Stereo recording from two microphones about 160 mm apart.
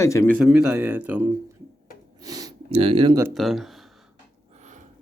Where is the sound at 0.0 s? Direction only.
20° left (ahead or behind).